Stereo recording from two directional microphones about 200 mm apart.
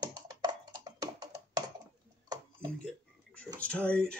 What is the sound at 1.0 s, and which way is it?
Music, 20° right (ahead or behind).